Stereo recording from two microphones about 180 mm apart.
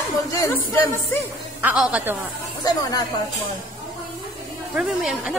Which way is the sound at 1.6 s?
10° right (ahead or behind).